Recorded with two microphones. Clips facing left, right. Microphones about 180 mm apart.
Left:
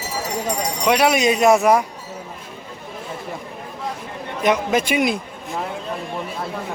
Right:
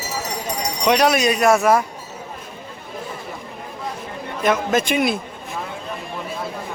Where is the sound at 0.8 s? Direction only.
10° left (ahead or behind).